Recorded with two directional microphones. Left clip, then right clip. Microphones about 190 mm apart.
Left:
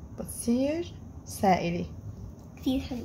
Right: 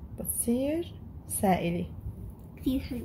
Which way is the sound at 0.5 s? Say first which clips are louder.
Left 1 dB; 10° right (ahead or behind).